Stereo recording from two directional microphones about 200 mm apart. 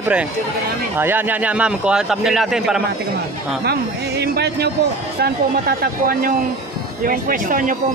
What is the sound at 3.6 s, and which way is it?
Speech, 55° right (ahead or behind).